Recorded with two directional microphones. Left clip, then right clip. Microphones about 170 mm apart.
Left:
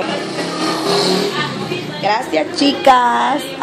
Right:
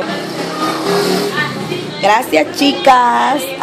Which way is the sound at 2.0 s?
45° right (ahead or behind).